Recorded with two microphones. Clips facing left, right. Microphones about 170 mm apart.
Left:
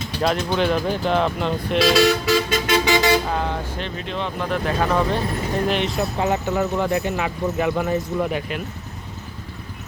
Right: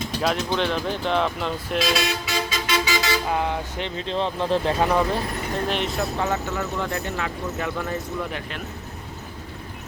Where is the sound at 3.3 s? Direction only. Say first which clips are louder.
Even; 15° right (ahead or behind).